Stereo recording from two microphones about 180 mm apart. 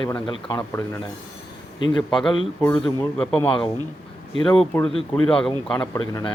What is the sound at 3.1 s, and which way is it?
Speech, 5° left (ahead or behind).